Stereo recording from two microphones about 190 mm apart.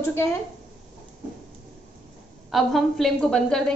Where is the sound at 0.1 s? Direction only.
10° left (ahead or behind).